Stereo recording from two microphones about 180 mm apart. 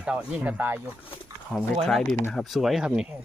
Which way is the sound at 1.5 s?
Centre (ahead or behind).